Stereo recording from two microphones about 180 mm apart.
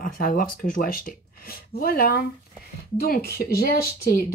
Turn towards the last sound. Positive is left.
turn(degrees=60)  # may be behind; listen again after turning